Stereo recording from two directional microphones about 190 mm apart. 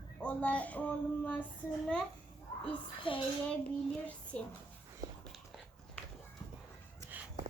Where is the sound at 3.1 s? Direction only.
25° left (ahead or behind).